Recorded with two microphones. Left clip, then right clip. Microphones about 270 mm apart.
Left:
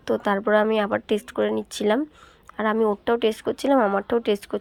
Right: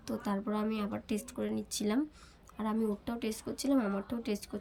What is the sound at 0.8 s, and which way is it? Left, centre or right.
Speech, left.